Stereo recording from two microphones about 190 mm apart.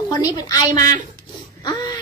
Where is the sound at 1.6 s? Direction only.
20° left (ahead or behind).